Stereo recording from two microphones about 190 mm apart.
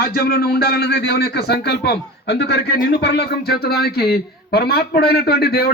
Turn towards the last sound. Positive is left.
turn(degrees=55)  # may be behind; listen again after turning